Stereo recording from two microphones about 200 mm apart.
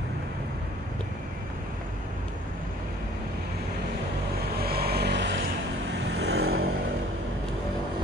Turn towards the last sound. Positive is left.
turn(degrees=-55)  # may be behind; listen again after turning